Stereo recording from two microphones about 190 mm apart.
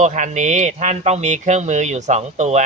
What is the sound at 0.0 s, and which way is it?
Speech, 40° right (ahead or behind).